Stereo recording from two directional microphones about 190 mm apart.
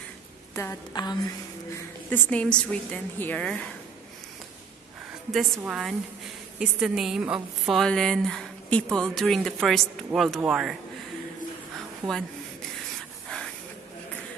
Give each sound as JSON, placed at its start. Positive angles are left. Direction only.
{"t": 0.6, "sound": "a sound", "side_deg": 20}
{"t": 2.0, "sound": "a woman's voice", "side_deg": 10}
{"t": 5.6, "sound": "a woman's voice", "side_deg": -5}
{"t": 12.0, "sound": "a woman's voice", "side_deg": 0}